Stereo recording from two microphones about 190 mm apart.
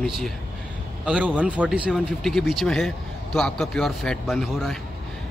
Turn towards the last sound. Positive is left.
turn(degrees=0)  # may be behind; listen again after turning